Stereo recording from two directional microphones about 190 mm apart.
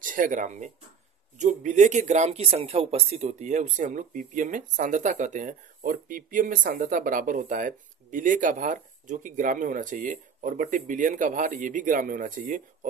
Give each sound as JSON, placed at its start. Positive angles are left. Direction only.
{"t": 0.0, "sound": "speech", "side_deg": -45}